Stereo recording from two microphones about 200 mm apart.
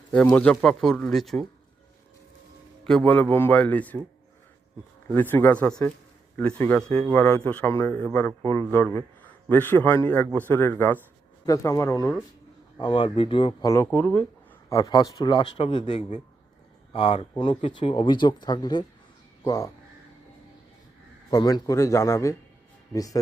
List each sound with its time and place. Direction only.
0.3 s speech: 5° left (ahead or behind)
2.8 s speech: 5° left (ahead or behind)
5.1 s speech: 10° left (ahead or behind)
12.8 s speech: 25° left (ahead or behind); by 14.3 s 5° left (ahead or behind)
14.7 s speech: 20° left (ahead or behind)
21.2 s speech: 20° left (ahead or behind)